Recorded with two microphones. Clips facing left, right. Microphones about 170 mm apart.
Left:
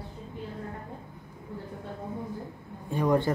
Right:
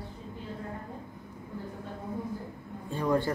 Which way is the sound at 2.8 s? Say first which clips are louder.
Left 3 dB; 15° left (ahead or behind).